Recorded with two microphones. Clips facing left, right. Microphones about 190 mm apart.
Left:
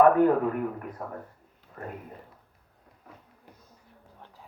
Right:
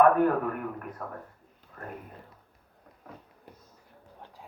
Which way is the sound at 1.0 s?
25° left (ahead or behind).